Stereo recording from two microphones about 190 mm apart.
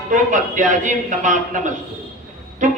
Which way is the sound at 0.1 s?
40° right (ahead or behind).